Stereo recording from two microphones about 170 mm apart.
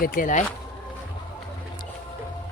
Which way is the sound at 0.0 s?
55° left (ahead or behind).